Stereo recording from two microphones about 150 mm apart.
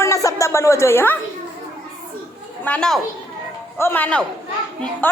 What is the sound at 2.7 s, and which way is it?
A woman's voice, 5° left (ahead or behind).